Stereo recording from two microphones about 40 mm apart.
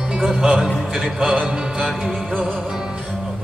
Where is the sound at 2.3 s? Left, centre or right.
Right.